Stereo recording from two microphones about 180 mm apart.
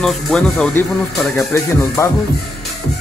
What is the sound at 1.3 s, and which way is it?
Speech, 15° left (ahead or behind).